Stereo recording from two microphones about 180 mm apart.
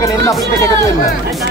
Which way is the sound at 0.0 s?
20° left (ahead or behind).